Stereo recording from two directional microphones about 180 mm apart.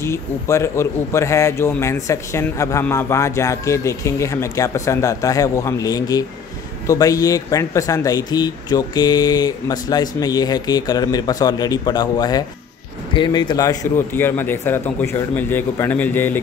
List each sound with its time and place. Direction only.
0.0 s speech: 15° left (ahead or behind)